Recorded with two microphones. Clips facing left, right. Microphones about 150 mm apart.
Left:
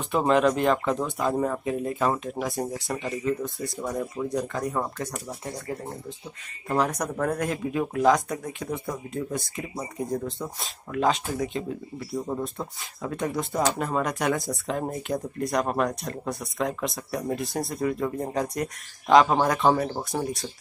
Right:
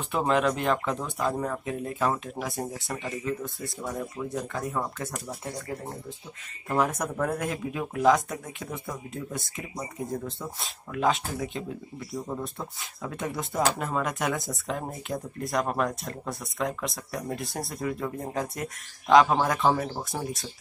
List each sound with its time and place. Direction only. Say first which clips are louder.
0.1 s speech: left 4 dB; centre (ahead or behind)
7.0 s speech: left 2 dB; 5° right (ahead or behind)